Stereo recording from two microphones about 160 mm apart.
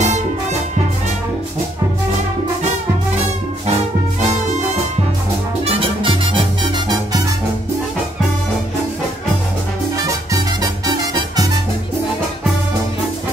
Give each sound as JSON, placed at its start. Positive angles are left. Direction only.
{"t": 0.0, "sound": "music", "side_deg": -45}
{"t": 5.7, "sound": "music", "side_deg": -35}
{"t": 9.9, "sound": "music", "side_deg": -25}